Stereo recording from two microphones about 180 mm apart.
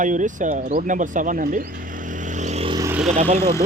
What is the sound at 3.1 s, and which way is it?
Speech, 40° right (ahead or behind).